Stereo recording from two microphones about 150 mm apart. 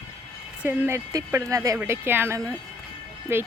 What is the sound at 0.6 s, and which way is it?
Speech, 10° right (ahead or behind).